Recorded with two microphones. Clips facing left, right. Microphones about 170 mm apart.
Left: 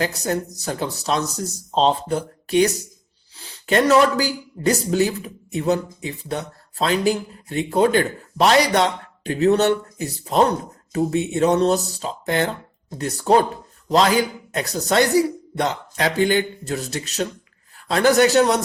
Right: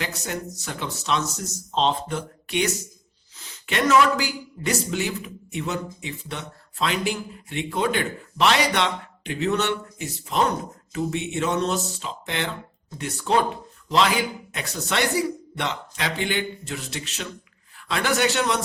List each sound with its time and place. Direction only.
0.0 s a man's voice: 40° left (ahead or behind)